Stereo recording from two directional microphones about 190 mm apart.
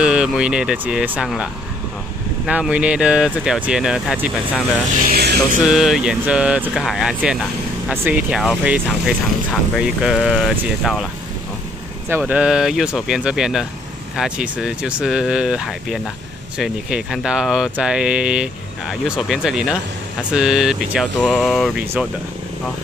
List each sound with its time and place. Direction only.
0.0 s speech: 5° right (ahead or behind)
5.0 s music: 55° right (ahead or behind)
5.7 s speech: centre (ahead or behind)
12.1 s speech: 10° right (ahead or behind)